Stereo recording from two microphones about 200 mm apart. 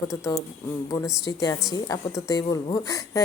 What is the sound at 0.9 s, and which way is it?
A woman's voice, 15° left (ahead or behind).